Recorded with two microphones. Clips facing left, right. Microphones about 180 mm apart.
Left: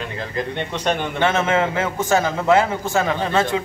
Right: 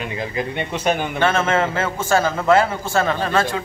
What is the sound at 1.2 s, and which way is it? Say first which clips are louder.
A man's voice: even; 15° left (ahead or behind).